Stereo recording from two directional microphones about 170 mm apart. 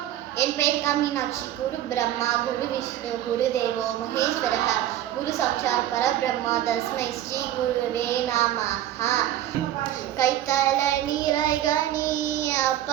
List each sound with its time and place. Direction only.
0.3 s child singing: 15° left (ahead or behind)
4.1 s child singing: 15° left (ahead or behind)
11.9 s child singing: 50° left (ahead or behind)